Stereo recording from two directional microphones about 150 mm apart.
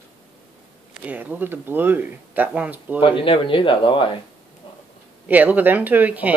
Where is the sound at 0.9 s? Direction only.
10° right (ahead or behind).